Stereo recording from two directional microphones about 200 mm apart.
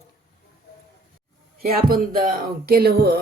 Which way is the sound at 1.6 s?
50° right (ahead or behind).